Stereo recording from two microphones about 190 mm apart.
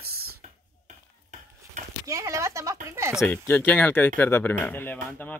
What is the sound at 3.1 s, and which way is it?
Speech, 5° left (ahead or behind).